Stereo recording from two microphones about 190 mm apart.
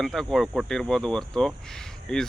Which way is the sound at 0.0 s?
Centre (ahead or behind).